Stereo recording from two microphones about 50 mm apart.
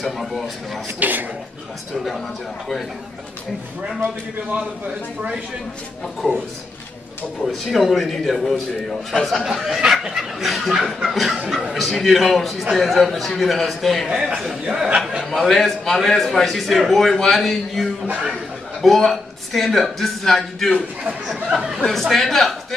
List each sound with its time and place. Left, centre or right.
0.0 s a man's voice: centre
0.9 s speech: right
7.4 s a man's voice: centre
9.4 s a man's voice: centre
14.0 s a man's voice: centre
21.4 s speech: centre
21.8 s a man's voice: centre